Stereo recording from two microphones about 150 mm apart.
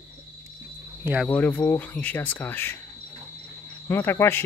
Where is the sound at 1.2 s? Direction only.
10° left (ahead or behind).